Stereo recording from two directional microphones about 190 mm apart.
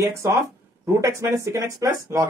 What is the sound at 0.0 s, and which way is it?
Speech, 15° right (ahead or behind).